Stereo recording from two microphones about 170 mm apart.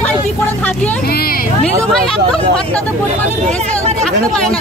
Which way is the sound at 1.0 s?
65° left (ahead or behind).